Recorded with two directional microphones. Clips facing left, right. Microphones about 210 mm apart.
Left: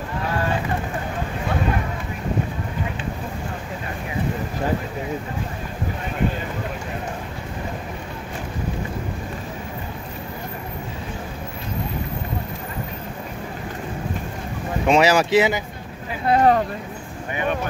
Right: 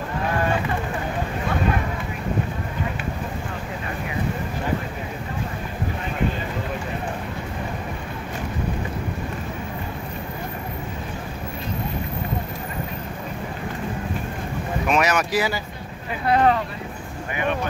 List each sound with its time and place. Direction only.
14.9 s speech: 30° left (ahead or behind)
16.3 s speech: 40° left (ahead or behind)